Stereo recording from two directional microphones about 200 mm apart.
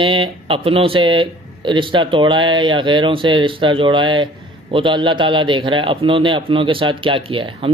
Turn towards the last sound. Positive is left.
turn(degrees=-25)  # may be behind; listen again after turning